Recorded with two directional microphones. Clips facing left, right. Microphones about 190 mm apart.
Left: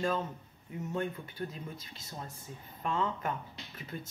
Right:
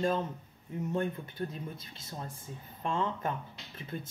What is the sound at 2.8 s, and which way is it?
Speech, 30° right (ahead or behind).